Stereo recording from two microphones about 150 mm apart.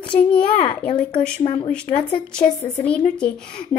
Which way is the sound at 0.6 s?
40° left (ahead or behind).